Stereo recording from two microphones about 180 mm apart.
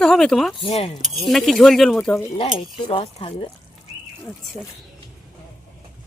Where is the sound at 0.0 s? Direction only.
5° left (ahead or behind).